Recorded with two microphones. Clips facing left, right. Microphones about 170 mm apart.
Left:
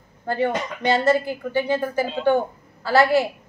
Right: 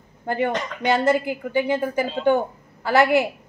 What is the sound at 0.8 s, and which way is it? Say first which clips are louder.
A woman's voice: even; 15° right (ahead or behind).